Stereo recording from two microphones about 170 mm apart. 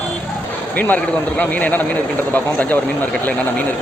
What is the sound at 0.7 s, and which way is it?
A man's voice, 10° left (ahead or behind).